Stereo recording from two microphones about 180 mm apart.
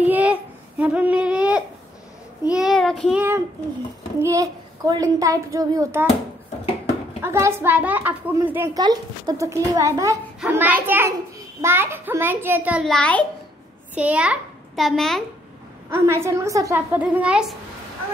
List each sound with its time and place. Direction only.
0.0 s a child's voice: 10° right (ahead or behind)
3.2 s a child's voice: 15° right (ahead or behind)
7.2 s a child's voice: 15° right (ahead or behind)
8.7 s a child's voice: 25° right (ahead or behind); by 13.2 s 5° left (ahead or behind)
13.9 s a child's voice: 5° right (ahead or behind)
15.9 s a child's voice: 15° right (ahead or behind)